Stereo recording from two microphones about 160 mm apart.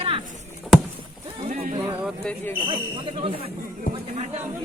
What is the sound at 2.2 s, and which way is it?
Speech, 10° left (ahead or behind).